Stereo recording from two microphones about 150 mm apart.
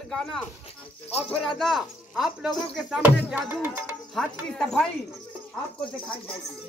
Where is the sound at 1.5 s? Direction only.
Centre (ahead or behind).